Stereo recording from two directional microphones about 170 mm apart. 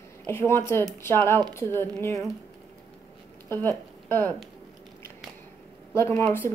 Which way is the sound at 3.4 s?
15° left (ahead or behind).